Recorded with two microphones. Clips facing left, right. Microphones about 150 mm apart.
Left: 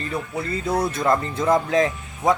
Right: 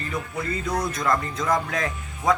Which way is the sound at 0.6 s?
30° left (ahead or behind).